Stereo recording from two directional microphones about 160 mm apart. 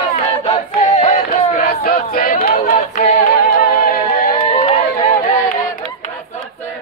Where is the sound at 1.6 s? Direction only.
70° left (ahead or behind).